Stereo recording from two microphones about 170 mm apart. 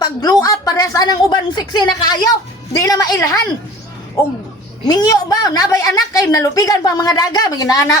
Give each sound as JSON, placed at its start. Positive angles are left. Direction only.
{"t": 0.0, "sound": "a woman's voice", "side_deg": 20}
{"t": 4.9, "sound": "a woman's voice", "side_deg": 20}